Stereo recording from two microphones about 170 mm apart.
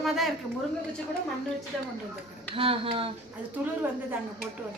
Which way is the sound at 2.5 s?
30° right (ahead or behind).